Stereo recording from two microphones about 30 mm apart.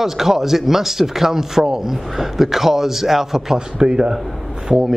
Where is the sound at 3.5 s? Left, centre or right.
Right.